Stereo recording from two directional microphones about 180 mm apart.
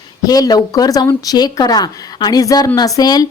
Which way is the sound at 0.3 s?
20° left (ahead or behind).